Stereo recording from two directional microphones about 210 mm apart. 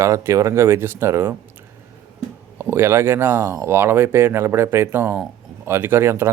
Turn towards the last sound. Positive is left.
turn(degrees=-10)  # may be behind; listen again after turning